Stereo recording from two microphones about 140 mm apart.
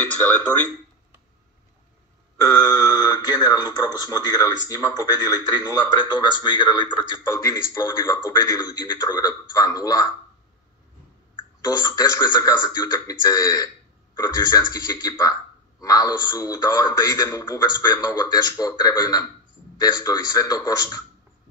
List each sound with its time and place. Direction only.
2.6 s a man's voice: 25° left (ahead or behind)
11.6 s a man's voice: 30° left (ahead or behind)